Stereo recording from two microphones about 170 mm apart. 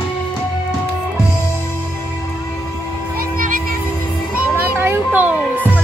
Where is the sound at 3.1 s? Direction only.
55° right (ahead or behind).